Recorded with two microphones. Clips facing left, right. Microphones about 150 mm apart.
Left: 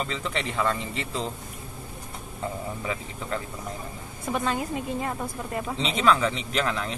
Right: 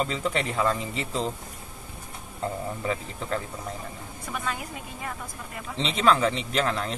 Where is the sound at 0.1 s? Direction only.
5° right (ahead or behind).